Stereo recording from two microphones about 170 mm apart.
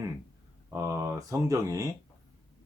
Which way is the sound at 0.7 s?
20° right (ahead or behind).